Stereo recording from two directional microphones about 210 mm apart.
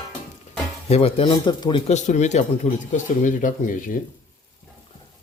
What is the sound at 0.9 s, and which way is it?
Speech, 25° left (ahead or behind).